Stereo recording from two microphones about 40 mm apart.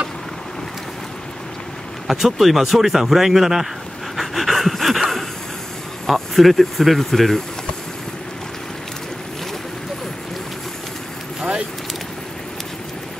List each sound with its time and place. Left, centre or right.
2.0 s speech: centre
4.2 s a sound: centre
6.0 s speech: centre